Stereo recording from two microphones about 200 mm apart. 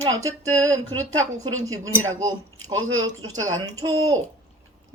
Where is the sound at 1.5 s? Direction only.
85° right.